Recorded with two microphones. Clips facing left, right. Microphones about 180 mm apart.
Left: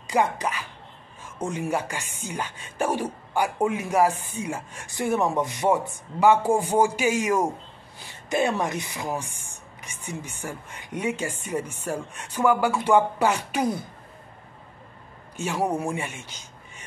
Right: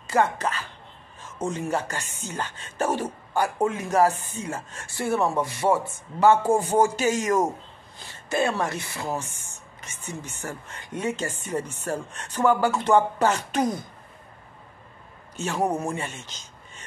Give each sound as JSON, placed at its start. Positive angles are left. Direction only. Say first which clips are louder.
{"t": 0.0, "sound": "speech", "louder": "right 1 dB", "side_deg": 15}
{"t": 15.3, "sound": "speech", "louder": "even", "side_deg": 10}